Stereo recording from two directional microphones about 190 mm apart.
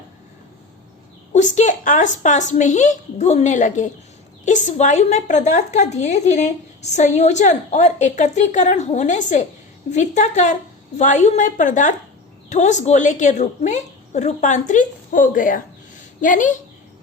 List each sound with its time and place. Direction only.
1.3 s a woman's voice: 40° left (ahead or behind)